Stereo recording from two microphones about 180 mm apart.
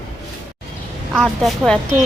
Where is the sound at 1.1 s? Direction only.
Centre (ahead or behind).